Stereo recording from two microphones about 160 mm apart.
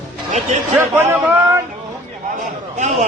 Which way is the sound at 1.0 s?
15° right (ahead or behind).